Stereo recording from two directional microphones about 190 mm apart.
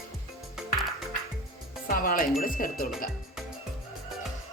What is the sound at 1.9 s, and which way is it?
Speech, 50° left (ahead or behind).